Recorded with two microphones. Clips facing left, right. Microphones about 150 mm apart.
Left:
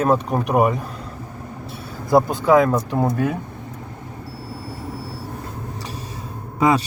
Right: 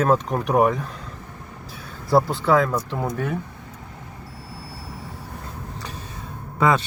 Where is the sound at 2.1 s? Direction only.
20° left (ahead or behind).